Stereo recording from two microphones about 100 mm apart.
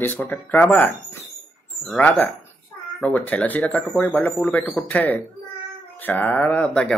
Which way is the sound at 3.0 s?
15° left (ahead or behind).